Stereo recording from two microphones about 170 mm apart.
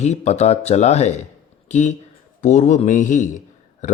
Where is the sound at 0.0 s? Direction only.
40° left (ahead or behind).